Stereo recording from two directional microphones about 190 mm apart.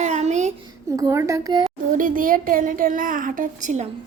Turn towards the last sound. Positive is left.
turn(degrees=-40)  # may be behind; listen again after turning